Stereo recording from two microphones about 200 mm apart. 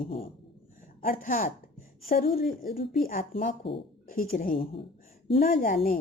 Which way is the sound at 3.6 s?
60° left (ahead or behind).